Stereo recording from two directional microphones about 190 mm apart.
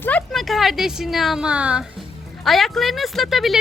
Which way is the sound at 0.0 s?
10° left (ahead or behind).